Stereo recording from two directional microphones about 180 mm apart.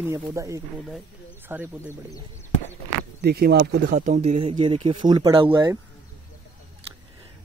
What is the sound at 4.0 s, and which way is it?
Speech, 40° right (ahead or behind).